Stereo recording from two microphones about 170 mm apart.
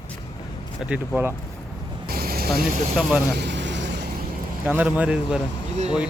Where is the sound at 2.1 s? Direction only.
60° right (ahead or behind).